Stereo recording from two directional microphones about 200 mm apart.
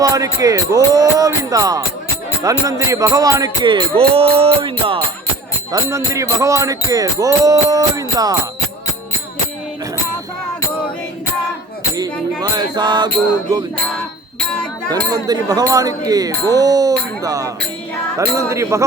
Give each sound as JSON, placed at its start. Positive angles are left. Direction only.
{"t": 0.1, "sound": "music", "side_deg": -15}
{"t": 11.9, "sound": "music", "side_deg": -20}
{"t": 14.8, "sound": "music", "side_deg": -20}